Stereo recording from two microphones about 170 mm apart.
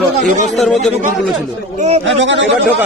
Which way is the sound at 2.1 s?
90° right.